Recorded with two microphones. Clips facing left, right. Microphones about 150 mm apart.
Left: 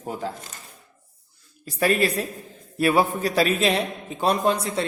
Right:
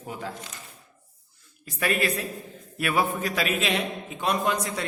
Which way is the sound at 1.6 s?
35° left (ahead or behind).